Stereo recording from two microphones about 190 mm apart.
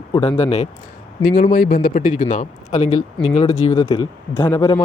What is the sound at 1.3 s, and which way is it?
A man's voice, 50° left (ahead or behind).